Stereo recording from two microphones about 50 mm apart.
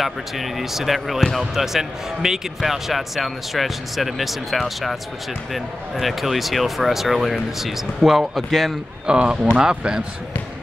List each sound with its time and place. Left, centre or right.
0.0 s speech: centre
7.5 s speech: centre
9.0 s speech: centre